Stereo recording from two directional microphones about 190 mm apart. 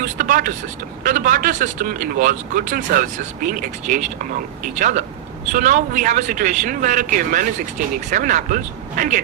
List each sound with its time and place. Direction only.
0.0 s speech: 45° right (ahead or behind)